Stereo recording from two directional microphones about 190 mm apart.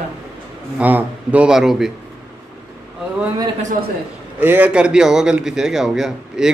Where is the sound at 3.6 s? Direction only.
45° right (ahead or behind).